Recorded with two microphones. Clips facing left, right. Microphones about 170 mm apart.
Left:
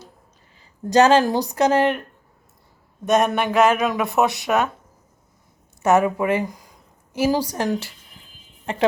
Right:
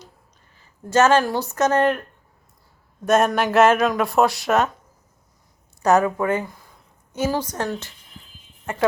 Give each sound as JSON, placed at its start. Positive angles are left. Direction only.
{"t": 0.9, "sound": "speech", "side_deg": 15}
{"t": 3.1, "sound": "speech", "side_deg": 0}
{"t": 6.0, "sound": "speech", "side_deg": 10}